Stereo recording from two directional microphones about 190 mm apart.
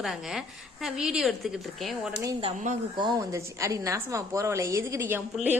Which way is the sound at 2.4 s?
35° right (ahead or behind).